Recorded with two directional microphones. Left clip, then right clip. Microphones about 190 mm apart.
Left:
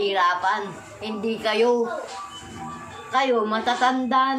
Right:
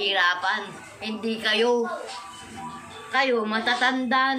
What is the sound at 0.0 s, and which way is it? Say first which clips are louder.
A woman's voice: left 2 dB; 25° left (ahead or behind).